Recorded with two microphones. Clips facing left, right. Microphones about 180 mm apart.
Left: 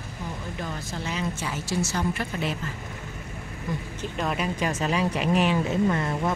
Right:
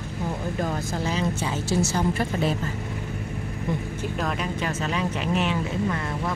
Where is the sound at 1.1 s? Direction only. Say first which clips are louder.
Right 2 dB; 30° right (ahead or behind).